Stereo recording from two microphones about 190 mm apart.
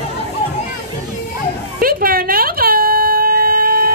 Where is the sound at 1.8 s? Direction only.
50° right (ahead or behind).